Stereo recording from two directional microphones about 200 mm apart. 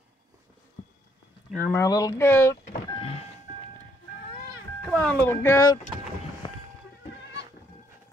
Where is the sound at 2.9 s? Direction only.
25° left (ahead or behind).